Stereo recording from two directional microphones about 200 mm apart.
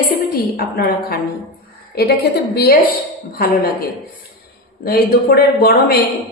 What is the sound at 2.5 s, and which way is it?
Speech, 50° left (ahead or behind).